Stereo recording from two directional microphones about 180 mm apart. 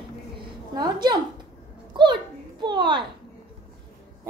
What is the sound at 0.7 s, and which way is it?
Speech, 25° right (ahead or behind).